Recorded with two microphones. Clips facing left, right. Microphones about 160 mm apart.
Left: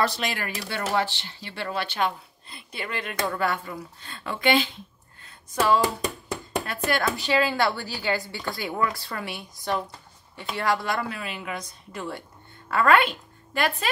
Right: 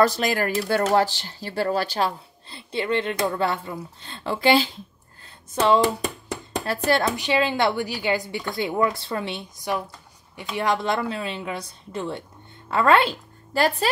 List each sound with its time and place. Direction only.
0.0 s speech: 45° right (ahead or behind)
5.2 s a sound: 25° right (ahead or behind)
6.6 s speech: 30° right (ahead or behind)
7.2 s a woman's voice: 20° right (ahead or behind)